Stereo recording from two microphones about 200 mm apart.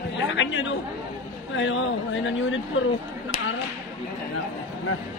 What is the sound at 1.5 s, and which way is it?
Speech, 70° left (ahead or behind).